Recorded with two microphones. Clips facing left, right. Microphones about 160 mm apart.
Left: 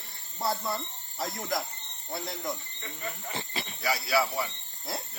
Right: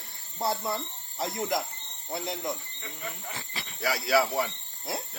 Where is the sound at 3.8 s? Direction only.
80° right.